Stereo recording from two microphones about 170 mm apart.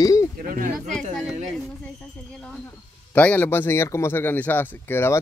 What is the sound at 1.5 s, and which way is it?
Speech, 5° left (ahead or behind).